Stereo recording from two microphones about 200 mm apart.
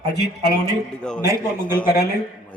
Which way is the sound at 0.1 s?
55° left (ahead or behind).